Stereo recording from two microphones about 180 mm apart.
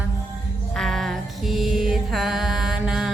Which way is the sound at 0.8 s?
Centre (ahead or behind).